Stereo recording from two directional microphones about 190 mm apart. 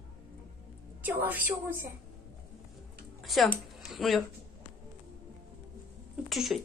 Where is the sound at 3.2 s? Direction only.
Centre (ahead or behind).